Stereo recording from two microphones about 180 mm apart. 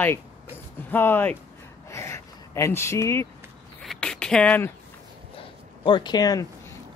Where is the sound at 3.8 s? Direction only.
5° left (ahead or behind).